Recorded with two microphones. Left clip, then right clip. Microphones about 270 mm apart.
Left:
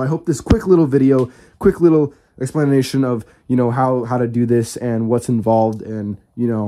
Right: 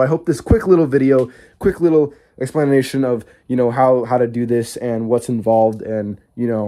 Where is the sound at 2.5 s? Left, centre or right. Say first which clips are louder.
Right 1 dB; centre.